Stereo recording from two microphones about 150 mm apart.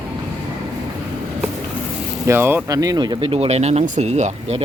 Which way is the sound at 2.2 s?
15° right (ahead or behind).